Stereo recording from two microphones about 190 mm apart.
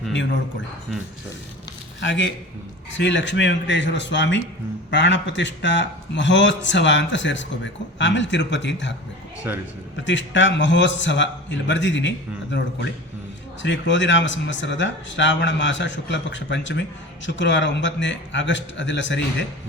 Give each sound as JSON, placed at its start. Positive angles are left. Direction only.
{"t": 0.1, "sound": "a man's voice", "side_deg": 75}
{"t": 2.0, "sound": "a man's voice", "side_deg": 70}
{"t": 9.5, "sound": "a man's voice", "side_deg": -10}
{"t": 10.1, "sound": "a man's voice", "side_deg": 70}